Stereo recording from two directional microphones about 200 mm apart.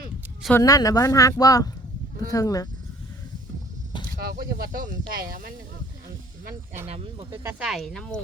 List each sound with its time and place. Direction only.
0.5 s speech: 15° left (ahead or behind)
4.2 s speech: 50° right (ahead or behind)
7.6 s speech: centre (ahead or behind)